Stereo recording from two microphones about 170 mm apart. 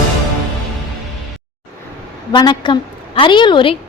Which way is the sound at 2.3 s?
25° left (ahead or behind).